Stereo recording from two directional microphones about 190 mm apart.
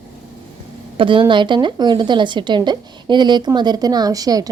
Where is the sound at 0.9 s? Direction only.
25° right (ahead or behind).